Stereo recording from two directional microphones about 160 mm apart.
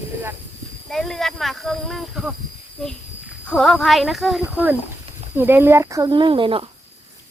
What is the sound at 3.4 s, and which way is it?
Speech, 5° left (ahead or behind).